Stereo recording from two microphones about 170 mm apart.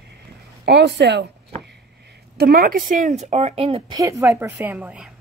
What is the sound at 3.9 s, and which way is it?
A woman's voice, 20° right (ahead or behind).